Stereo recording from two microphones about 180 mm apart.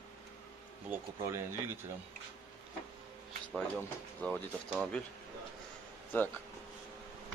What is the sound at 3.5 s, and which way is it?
Speech, 5° left (ahead or behind).